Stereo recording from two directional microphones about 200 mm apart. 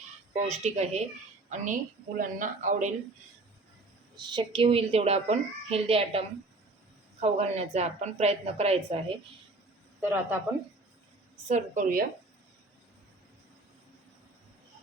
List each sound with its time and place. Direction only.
0.4 s a woman's voice: 35° right (ahead or behind)
4.3 s a woman's voice: 25° right (ahead or behind)
10.0 s speech: 10° right (ahead or behind)
11.4 s a woman's voice: 40° right (ahead or behind)